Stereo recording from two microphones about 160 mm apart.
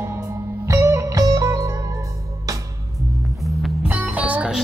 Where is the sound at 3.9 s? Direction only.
10° right (ahead or behind).